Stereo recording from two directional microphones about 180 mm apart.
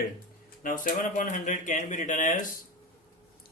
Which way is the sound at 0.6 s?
50° left (ahead or behind).